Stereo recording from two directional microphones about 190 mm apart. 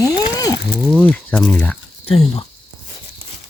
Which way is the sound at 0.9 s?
5° left (ahead or behind).